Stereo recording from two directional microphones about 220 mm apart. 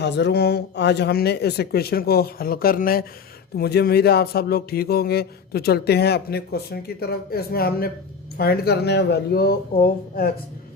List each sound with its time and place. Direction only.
0.0 s speech: 50° left (ahead or behind)